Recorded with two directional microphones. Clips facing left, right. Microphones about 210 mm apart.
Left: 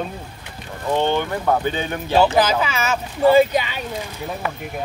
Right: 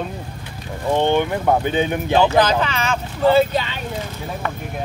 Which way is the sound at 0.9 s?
15° right (ahead or behind).